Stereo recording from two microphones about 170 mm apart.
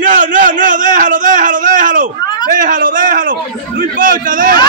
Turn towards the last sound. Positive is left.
turn(degrees=-55)  # may be behind; listen again after turning